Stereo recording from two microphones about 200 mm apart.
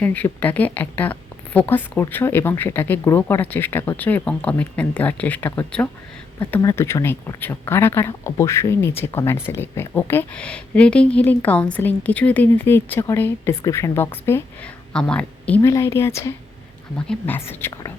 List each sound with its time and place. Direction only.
0.0 s a woman's voice: 10° left (ahead or behind)